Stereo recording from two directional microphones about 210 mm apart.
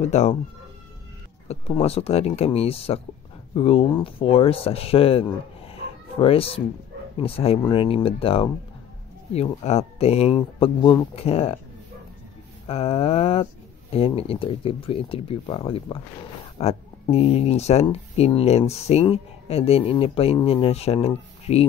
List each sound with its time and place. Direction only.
0.0 s speech: 30° left (ahead or behind)
1.5 s speech: 30° left (ahead or behind)
5.7 s chicken: 25° left (ahead or behind)
7.2 s speech: 25° left (ahead or behind)
12.6 s speech: 30° left (ahead or behind)